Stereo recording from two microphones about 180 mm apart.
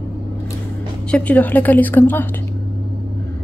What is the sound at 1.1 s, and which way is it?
Speech, 10° left (ahead or behind).